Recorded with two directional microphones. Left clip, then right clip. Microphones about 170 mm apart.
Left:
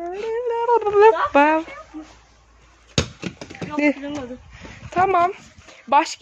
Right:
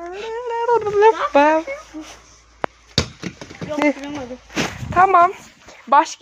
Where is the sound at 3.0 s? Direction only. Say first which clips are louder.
Right 2 dB; 30° right (ahead or behind).